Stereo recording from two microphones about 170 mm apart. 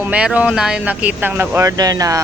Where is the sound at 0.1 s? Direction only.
5° right (ahead or behind).